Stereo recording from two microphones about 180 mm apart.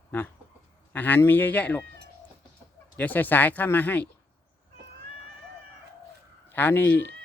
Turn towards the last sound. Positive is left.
turn(degrees=10)  # may be behind; listen again after turning